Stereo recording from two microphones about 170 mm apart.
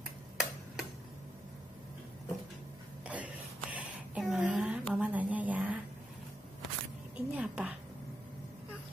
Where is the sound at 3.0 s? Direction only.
10° right (ahead or behind).